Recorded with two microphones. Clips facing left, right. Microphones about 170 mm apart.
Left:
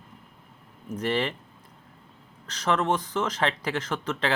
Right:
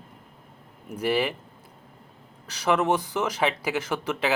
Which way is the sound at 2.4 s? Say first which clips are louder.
Right 2 dB; 10° right (ahead or behind).